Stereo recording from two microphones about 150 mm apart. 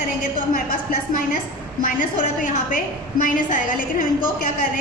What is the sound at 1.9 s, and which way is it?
A woman's voice, 60° left (ahead or behind).